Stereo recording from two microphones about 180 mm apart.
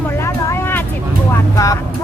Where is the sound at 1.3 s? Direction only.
20° left (ahead or behind).